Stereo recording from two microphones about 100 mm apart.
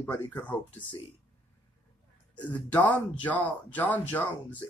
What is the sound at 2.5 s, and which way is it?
Speech, 15° left (ahead or behind).